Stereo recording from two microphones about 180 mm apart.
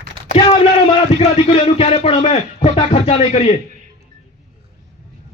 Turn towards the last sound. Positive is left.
turn(degrees=40)  # may be behind; listen again after turning